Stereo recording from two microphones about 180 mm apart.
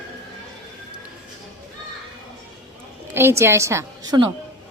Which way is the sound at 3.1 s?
15° right (ahead or behind).